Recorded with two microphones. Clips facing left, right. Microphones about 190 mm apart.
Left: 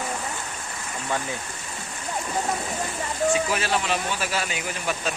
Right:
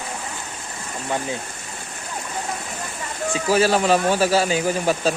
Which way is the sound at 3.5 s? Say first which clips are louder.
Right 8 dB; 40° right (ahead or behind).